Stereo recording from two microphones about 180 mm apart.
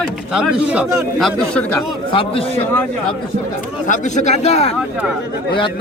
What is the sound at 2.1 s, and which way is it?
Speech, 30° left (ahead or behind).